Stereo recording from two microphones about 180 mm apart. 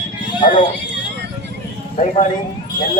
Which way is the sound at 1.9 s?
40° left (ahead or behind).